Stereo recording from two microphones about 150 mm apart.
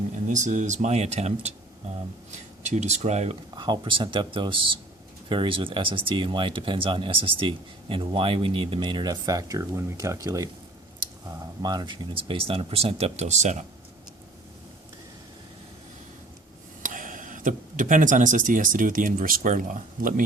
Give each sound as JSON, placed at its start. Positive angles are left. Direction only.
{"t": 0.3, "sound": "speech", "side_deg": -55}
{"t": 3.5, "sound": "speech", "side_deg": -30}
{"t": 16.8, "sound": "speech", "side_deg": -60}